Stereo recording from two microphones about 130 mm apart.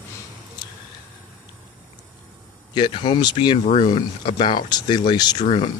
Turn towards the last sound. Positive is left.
turn(degrees=55)  # may be behind; listen again after turning